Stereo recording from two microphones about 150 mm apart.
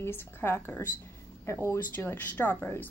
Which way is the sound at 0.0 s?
15° left (ahead or behind).